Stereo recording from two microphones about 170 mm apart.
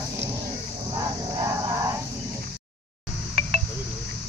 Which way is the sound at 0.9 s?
20° right (ahead or behind).